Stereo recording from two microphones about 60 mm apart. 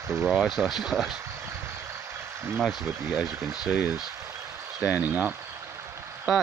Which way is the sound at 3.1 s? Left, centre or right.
Centre.